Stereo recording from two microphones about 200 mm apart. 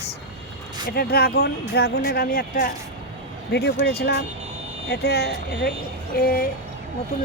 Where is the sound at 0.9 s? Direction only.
50° left (ahead or behind).